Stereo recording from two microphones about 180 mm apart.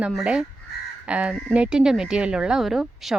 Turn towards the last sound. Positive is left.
turn(degrees=0)  # may be behind; listen again after turning